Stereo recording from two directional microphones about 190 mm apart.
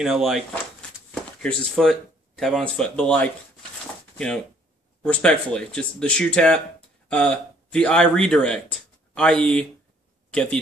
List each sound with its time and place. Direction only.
0.0 s speech: centre (ahead or behind)
5.0 s speech: 5° left (ahead or behind)